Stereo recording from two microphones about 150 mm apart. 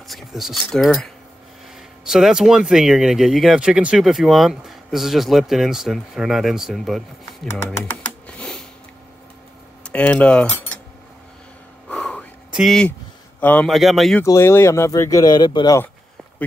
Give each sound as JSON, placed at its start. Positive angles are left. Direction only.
{"t": 0.1, "sound": "speech", "side_deg": 0}
{"t": 9.8, "sound": "speech", "side_deg": 10}
{"t": 11.9, "sound": "a sound", "side_deg": 5}
{"t": 12.5, "sound": "speech", "side_deg": 0}
{"t": 13.7, "sound": "speech", "side_deg": 0}
{"t": 14.2, "sound": "speech", "side_deg": 20}